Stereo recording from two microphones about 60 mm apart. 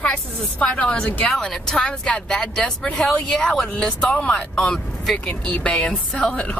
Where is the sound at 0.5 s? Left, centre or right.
Left.